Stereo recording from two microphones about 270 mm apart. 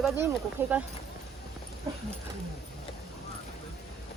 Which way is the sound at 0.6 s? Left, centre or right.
Centre.